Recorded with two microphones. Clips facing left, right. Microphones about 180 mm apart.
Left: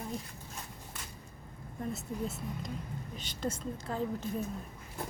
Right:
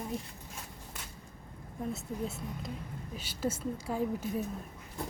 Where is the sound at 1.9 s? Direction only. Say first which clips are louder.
Even; centre (ahead or behind).